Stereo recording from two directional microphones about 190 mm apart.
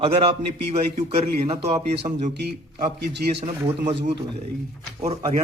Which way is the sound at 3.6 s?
25° right (ahead or behind).